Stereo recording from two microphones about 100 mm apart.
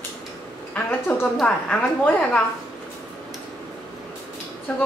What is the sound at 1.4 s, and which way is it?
Speech, 15° left (ahead or behind).